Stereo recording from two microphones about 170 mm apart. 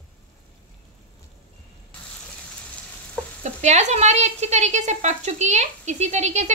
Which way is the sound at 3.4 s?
45° right (ahead or behind).